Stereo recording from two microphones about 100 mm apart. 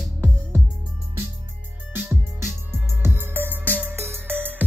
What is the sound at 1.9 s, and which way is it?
Music, 20° right (ahead or behind).